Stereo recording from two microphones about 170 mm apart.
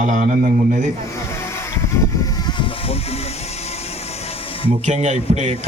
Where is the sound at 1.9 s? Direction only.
20° left (ahead or behind).